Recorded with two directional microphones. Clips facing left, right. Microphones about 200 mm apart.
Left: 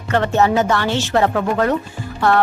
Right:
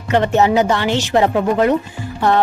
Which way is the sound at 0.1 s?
20° right (ahead or behind).